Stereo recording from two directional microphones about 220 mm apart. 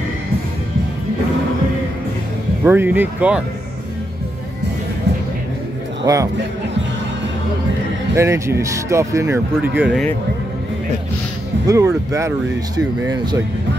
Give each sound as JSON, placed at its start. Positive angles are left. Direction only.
{"t": 2.6, "sound": "speech", "side_deg": -10}
{"t": 6.0, "sound": "speech", "side_deg": -15}
{"t": 8.1, "sound": "speech", "side_deg": -15}
{"t": 11.6, "sound": "speech", "side_deg": -15}